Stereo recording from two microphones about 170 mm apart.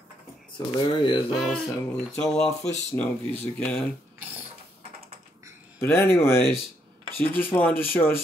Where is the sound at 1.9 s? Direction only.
5° left (ahead or behind).